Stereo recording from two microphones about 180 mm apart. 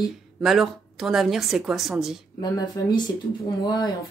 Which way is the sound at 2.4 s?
25° left (ahead or behind).